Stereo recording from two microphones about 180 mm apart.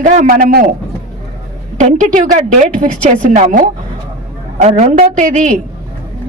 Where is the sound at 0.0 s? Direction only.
45° right (ahead or behind).